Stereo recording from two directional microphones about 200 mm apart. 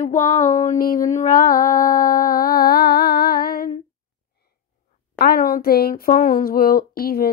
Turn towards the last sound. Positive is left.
turn(degrees=50)  # may be behind; listen again after turning